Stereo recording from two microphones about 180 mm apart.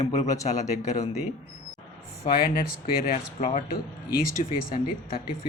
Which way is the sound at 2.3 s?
55° left (ahead or behind).